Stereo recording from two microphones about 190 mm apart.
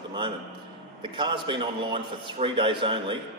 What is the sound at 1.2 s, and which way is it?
A man's voice, 25° right (ahead or behind).